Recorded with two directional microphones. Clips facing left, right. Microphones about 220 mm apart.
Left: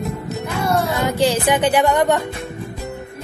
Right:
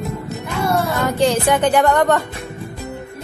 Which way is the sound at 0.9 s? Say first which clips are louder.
Right 1 dB; 15° left (ahead or behind).